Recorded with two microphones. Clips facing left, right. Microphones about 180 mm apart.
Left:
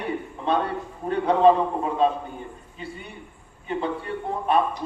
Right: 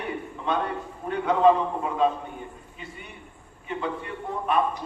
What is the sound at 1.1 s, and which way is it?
A man's voice, 30° left (ahead or behind).